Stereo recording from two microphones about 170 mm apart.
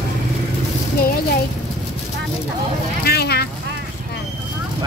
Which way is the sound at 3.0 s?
70° left (ahead or behind).